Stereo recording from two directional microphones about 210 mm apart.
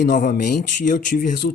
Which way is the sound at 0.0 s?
40° left (ahead or behind).